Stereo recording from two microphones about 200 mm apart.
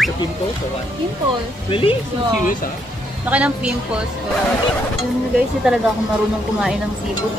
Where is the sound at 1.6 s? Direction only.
25° left (ahead or behind).